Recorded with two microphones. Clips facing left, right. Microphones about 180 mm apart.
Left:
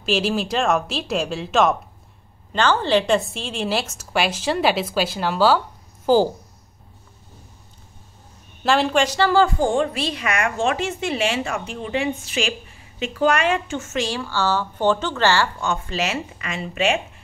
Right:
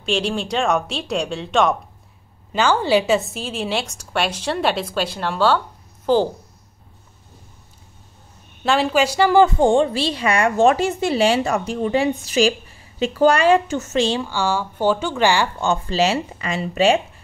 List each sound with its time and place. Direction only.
0.0 s a woman's voice: 5° left (ahead or behind)
2.5 s a woman's voice: 10° right (ahead or behind); by 6.3 s 5° left (ahead or behind)
8.6 s a woman's voice: centre (ahead or behind); by 14.0 s 40° right (ahead or behind)
14.0 s a woman's voice: 20° right (ahead or behind)
15.6 s a woman's voice: 30° right (ahead or behind)